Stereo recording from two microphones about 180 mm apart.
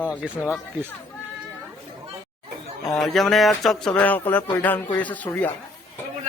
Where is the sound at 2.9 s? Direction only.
Centre (ahead or behind).